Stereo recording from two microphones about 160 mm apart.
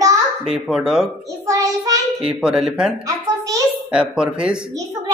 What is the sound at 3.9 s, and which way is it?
Speech, 5° right (ahead or behind).